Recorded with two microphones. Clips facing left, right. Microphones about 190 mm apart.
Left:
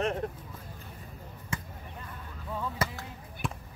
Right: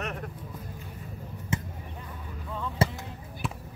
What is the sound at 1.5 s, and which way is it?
Basketball bounce, 25° right (ahead or behind).